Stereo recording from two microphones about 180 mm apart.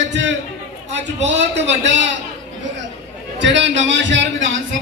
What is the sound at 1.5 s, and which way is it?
Speech, 80° right.